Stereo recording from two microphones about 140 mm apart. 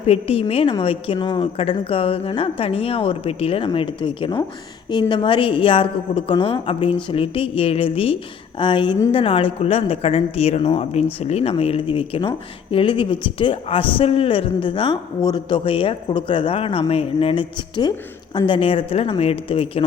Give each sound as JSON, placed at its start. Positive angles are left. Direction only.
{"t": 0.0, "sound": "a woman's voice", "side_deg": 45}